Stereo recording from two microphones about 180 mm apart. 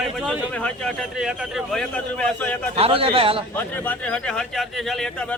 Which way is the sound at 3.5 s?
10° left (ahead or behind).